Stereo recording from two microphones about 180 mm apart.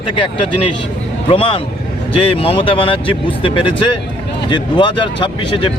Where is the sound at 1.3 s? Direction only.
30° left (ahead or behind).